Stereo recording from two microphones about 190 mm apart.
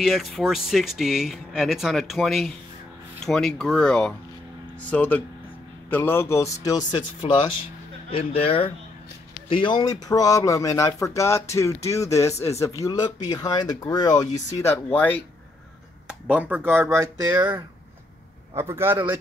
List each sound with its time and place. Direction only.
0.0 s speech: centre (ahead or behind); by 14.2 s 20° left (ahead or behind)
16.1 s speech: 5° right (ahead or behind)
18.6 s speech: 15° right (ahead or behind)